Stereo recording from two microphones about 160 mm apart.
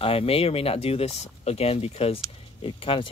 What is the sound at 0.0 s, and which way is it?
Speech, 35° left (ahead or behind).